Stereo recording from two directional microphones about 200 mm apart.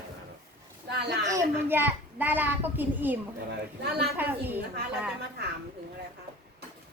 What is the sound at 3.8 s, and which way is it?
Speech, 55° right (ahead or behind).